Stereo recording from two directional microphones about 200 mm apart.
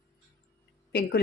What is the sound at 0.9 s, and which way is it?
Speech, 50° left (ahead or behind).